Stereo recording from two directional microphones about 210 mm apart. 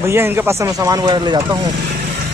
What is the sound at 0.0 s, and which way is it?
Speech, 10° right (ahead or behind).